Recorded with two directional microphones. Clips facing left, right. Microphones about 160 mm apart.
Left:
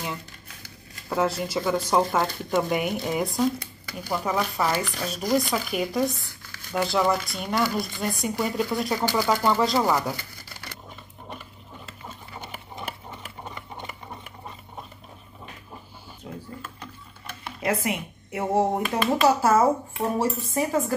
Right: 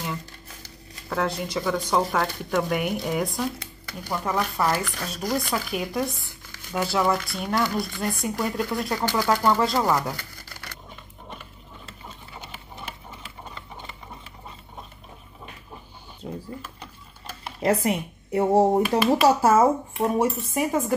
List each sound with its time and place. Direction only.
1.0 s speech: 5° left (ahead or behind)
17.3 s a sound: 30° right (ahead or behind)
19.2 s speech: 25° right (ahead or behind)